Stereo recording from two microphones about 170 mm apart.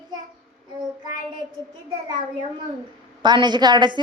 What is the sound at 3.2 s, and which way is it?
Speech, 25° right (ahead or behind).